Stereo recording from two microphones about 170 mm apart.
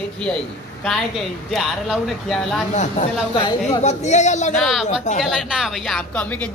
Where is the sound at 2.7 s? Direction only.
45° left (ahead or behind).